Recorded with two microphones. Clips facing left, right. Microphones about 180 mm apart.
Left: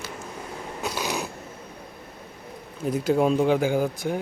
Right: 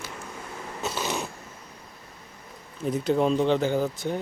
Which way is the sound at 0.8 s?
10° left (ahead or behind).